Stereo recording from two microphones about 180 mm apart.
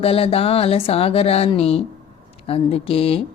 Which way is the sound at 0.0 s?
30° left (ahead or behind).